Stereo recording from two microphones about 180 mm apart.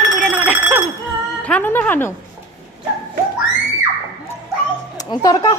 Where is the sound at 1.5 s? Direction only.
10° left (ahead or behind).